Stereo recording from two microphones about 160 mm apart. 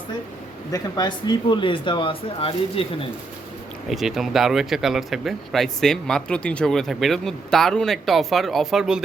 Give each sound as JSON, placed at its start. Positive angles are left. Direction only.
{"t": 0.7, "sound": "speech", "side_deg": 25}
{"t": 3.8, "sound": "speech", "side_deg": 0}